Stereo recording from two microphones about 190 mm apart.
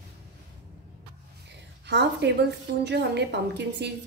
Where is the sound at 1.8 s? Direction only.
65° right (ahead or behind).